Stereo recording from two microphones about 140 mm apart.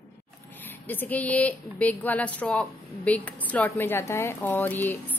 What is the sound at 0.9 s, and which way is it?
A woman's voice, 10° left (ahead or behind).